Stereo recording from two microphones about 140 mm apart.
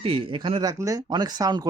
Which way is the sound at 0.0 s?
40° right (ahead or behind).